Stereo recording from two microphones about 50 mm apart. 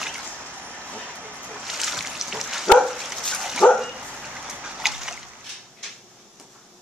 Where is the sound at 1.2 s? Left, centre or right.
Right.